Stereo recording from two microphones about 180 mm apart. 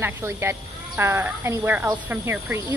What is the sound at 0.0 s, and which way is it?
A woman's voice, 15° right (ahead or behind).